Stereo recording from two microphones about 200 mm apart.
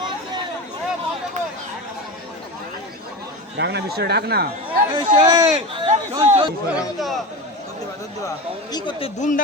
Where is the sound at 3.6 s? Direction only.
55° right (ahead or behind).